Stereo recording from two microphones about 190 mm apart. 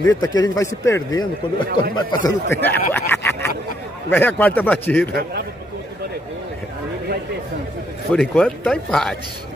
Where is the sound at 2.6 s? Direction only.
10° left (ahead or behind).